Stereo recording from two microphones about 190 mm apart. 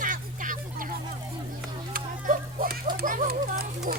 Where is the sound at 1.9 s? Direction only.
45° right (ahead or behind).